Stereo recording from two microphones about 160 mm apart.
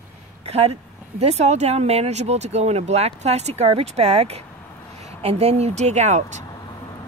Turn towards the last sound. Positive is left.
turn(degrees=-45)  # may be behind; listen again after turning